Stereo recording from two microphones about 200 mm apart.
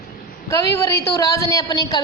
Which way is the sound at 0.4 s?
15° left (ahead or behind).